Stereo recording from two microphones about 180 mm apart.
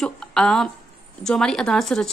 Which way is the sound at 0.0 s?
5° left (ahead or behind).